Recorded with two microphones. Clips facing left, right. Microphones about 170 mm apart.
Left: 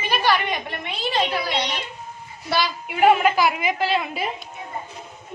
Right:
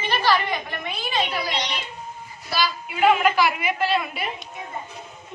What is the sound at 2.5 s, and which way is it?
Speech, 60° left (ahead or behind).